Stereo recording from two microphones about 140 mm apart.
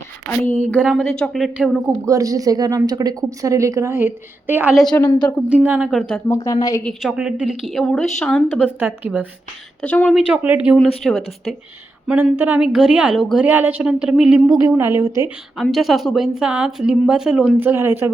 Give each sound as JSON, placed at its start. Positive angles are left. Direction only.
{"t": 0.8, "sound": "speech", "side_deg": -5}
{"t": 1.9, "sound": "a woman's voice", "side_deg": -25}
{"t": 4.9, "sound": "speech", "side_deg": 25}
{"t": 5.5, "sound": "a woman's voice", "side_deg": -15}
{"t": 5.9, "sound": "speech", "side_deg": 0}
{"t": 6.1, "sound": "speech", "side_deg": 20}
{"t": 6.8, "sound": "a woman's voice", "side_deg": -5}
{"t": 8.8, "sound": "a woman's voice", "side_deg": -10}
{"t": 9.8, "sound": "a woman's voice", "side_deg": 10}
{"t": 10.2, "sound": "a woman's voice", "side_deg": -10}
{"t": 10.8, "sound": "speech", "side_deg": 5}
{"t": 12.0, "sound": "a woman's voice", "side_deg": -15}
{"t": 15.5, "sound": "speech", "side_deg": 0}
{"t": 17.6, "sound": "a woman's voice", "side_deg": -15}